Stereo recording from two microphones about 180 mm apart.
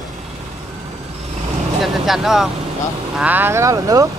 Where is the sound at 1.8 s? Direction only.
Centre (ahead or behind); by 4.1 s 20° right (ahead or behind).